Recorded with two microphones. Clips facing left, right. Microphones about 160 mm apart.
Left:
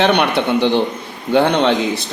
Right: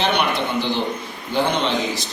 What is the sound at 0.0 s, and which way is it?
A man's voice, 70° left (ahead or behind).